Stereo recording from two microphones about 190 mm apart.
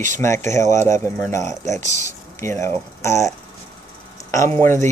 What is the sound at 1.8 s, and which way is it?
Speech, 40° right (ahead or behind).